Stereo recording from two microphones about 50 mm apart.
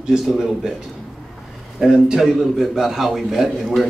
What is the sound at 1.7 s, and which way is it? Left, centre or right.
A man's voice, centre.